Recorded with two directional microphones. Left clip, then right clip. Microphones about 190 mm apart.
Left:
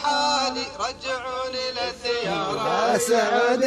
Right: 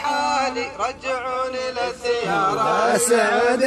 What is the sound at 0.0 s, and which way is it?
Music, 45° right (ahead or behind).